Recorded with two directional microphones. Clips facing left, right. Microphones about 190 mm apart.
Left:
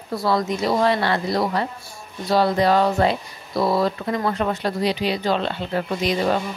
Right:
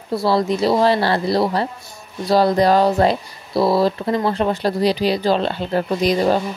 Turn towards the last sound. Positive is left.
turn(degrees=-35)  # may be behind; listen again after turning